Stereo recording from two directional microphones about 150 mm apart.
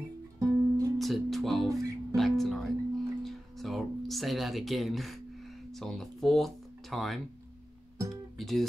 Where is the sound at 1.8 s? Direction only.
20° right (ahead or behind).